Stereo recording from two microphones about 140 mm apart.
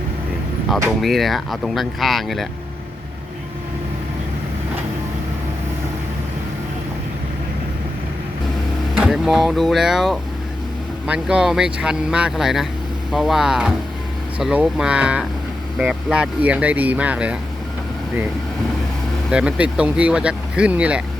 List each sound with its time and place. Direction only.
1.0 s speech: centre (ahead or behind)
9.0 s speech: 5° right (ahead or behind)
19.3 s speech: 5° right (ahead or behind)